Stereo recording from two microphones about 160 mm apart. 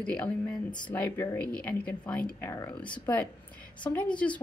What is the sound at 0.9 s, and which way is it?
Speech, 10° left (ahead or behind).